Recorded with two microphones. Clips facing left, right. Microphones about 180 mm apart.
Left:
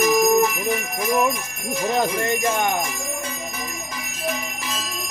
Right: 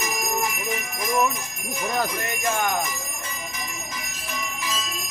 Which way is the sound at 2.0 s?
25° left (ahead or behind).